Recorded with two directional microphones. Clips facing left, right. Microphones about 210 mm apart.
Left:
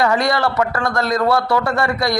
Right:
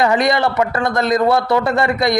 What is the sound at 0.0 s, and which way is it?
A man's voice, 20° right (ahead or behind).